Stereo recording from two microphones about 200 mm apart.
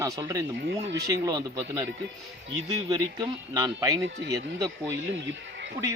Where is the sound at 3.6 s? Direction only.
15° right (ahead or behind).